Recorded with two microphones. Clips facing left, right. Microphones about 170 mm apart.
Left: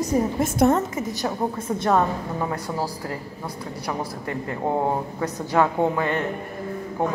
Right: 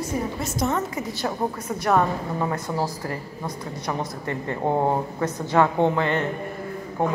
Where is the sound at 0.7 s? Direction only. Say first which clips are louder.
Left 2 dB; 25° left (ahead or behind).